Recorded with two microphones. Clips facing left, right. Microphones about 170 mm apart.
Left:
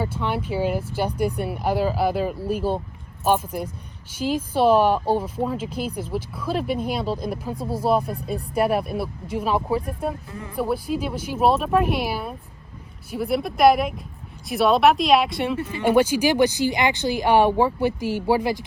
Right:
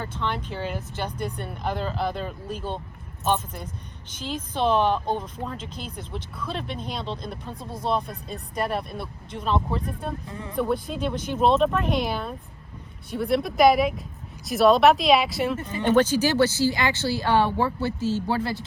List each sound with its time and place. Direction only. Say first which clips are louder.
0.0 s speech: left 4 dB; 10° left (ahead or behind)
7.5 s speech: left 8 dB; 30° left (ahead or behind)
7.9 s speech: left 5 dB; 10° left (ahead or behind)
15.6 s speech: left 2 dB; 10° left (ahead or behind)